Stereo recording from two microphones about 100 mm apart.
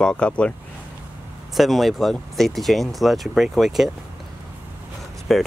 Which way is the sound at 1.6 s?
Centre (ahead or behind).